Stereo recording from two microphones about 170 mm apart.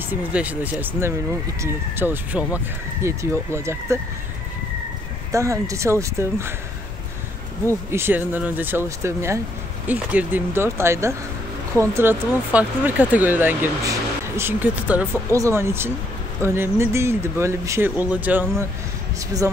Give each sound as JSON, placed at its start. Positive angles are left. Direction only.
{"t": 0.1, "sound": "speech", "side_deg": -10}
{"t": 5.3, "sound": "speech", "side_deg": -20}
{"t": 7.9, "sound": "speech", "side_deg": -15}